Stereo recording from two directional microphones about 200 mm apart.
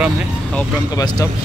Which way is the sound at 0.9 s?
20° left (ahead or behind).